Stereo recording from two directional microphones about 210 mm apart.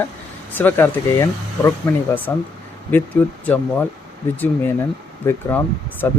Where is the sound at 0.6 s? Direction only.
10° left (ahead or behind).